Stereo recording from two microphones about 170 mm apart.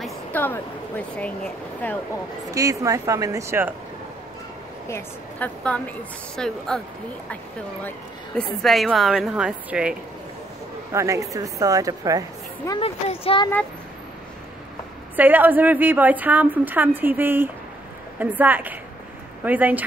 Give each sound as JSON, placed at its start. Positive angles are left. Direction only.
{"t": 0.3, "sound": "speech", "side_deg": 10}
{"t": 2.5, "sound": "speech", "side_deg": -20}
{"t": 4.8, "sound": "a woman's voice", "side_deg": 15}
{"t": 8.4, "sound": "a woman's voice", "side_deg": 0}
{"t": 10.9, "sound": "speech", "side_deg": -20}
{"t": 12.8, "sound": "speech", "side_deg": 35}
{"t": 15.1, "sound": "a woman's voice", "side_deg": -10}